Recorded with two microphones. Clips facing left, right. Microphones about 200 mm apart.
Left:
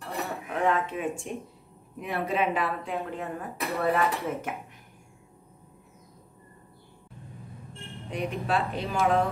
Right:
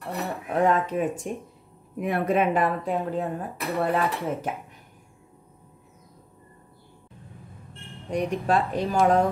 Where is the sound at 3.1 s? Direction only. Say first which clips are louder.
Right 6 dB; 30° right (ahead or behind).